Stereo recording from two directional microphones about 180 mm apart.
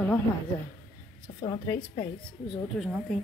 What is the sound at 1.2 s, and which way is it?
A woman's voice, 25° left (ahead or behind).